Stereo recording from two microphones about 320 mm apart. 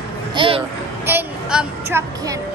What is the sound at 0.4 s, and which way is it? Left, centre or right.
Speech, centre.